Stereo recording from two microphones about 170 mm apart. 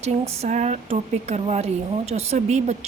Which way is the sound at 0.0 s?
40° right (ahead or behind).